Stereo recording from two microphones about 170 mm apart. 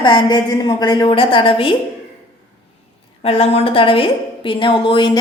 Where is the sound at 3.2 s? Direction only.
35° left (ahead or behind).